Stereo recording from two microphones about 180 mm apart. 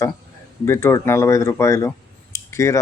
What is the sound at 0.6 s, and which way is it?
Speech, 15° left (ahead or behind).